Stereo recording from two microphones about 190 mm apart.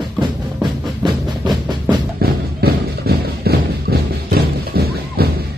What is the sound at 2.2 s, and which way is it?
Music, 55° right (ahead or behind).